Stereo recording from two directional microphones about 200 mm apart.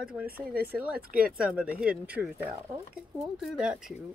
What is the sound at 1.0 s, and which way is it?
Speech, 45° right (ahead or behind).